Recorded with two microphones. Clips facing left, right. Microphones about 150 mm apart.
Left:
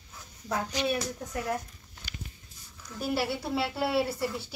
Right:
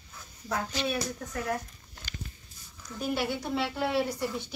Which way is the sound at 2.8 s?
5° left (ahead or behind).